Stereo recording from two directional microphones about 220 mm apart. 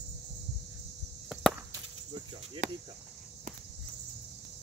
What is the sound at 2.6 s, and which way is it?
Speech, 35° right (ahead or behind).